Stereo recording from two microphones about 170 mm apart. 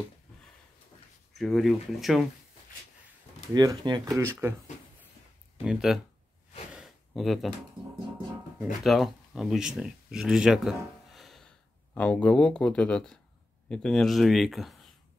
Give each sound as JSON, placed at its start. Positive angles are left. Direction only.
{"t": 1.4, "sound": "speech", "side_deg": 0}
{"t": 3.5, "sound": "speech", "side_deg": -25}
{"t": 5.6, "sound": "speech", "side_deg": 0}
{"t": 6.7, "sound": "a sound", "side_deg": 0}
{"t": 8.8, "sound": "speech", "side_deg": 0}